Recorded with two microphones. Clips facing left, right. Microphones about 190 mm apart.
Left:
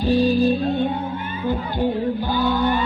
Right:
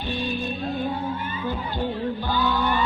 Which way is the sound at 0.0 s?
35° left (ahead or behind).